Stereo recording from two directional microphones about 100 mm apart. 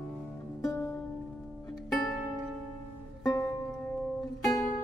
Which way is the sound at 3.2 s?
40° left (ahead or behind).